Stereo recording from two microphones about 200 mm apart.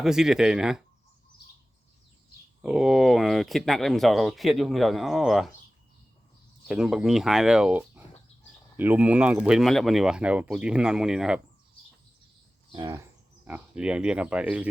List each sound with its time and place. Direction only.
0.0 s speech: centre (ahead or behind)
2.6 s speech: 5° right (ahead or behind)
6.7 s speech: 5° right (ahead or behind)
12.7 s speech: 25° right (ahead or behind)
13.4 s speech: 5° right (ahead or behind)